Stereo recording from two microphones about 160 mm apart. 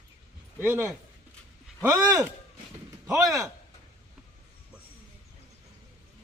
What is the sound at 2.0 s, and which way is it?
Speech, 5° right (ahead or behind).